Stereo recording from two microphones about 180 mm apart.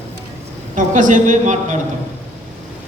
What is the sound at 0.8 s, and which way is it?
A man's voice, 45° right (ahead or behind).